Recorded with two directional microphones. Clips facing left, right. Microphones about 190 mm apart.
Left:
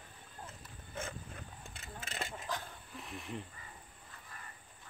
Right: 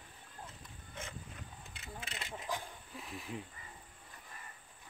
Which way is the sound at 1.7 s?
45° left (ahead or behind).